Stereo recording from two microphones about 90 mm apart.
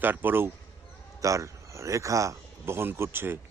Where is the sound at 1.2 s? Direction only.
35° right (ahead or behind).